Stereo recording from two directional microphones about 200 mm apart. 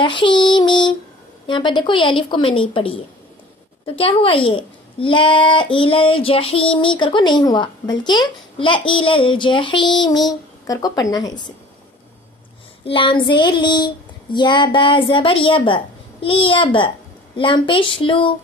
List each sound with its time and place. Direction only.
0.0 s a child's voice: 25° left (ahead or behind)
12.8 s a child's voice: 25° left (ahead or behind)